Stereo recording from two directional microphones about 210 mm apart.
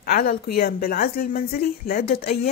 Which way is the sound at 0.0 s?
45° left (ahead or behind).